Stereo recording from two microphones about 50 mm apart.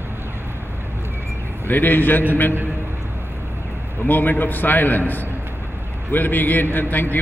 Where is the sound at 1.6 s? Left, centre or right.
Left.